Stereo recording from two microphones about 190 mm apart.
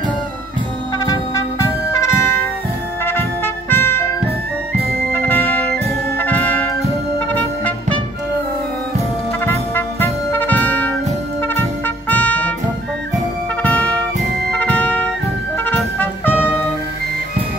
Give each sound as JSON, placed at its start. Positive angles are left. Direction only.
{"t": 0.9, "sound": "music", "side_deg": 20}
{"t": 5.1, "sound": "music", "side_deg": 10}
{"t": 6.1, "sound": "brass instrument", "side_deg": 10}
{"t": 7.3, "sound": "music", "side_deg": 10}
{"t": 9.5, "sound": "brass instrument", "side_deg": 10}
{"t": 12.1, "sound": "music", "side_deg": 10}
{"t": 13.6, "sound": "brass instrument", "side_deg": 10}
{"t": 14.5, "sound": "music", "side_deg": 5}